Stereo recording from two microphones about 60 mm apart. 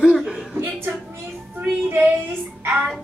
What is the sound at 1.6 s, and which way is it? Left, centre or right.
Child singing, right.